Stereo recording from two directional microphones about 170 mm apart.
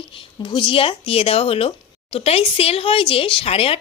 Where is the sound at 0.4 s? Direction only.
30° left (ahead or behind).